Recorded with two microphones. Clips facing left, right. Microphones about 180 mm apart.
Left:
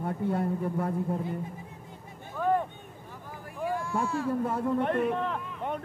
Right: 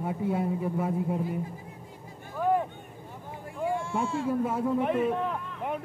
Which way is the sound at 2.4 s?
10° right (ahead or behind).